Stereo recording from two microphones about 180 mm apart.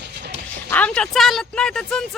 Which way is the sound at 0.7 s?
10° left (ahead or behind).